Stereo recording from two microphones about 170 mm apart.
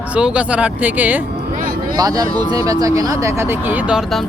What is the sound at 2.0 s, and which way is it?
Speech, 20° right (ahead or behind).